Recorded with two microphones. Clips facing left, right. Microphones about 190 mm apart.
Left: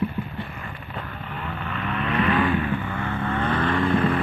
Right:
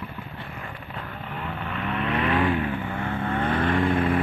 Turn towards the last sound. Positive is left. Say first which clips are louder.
# left 1 dB
turn(degrees=-10)  # may be behind; listen again after turning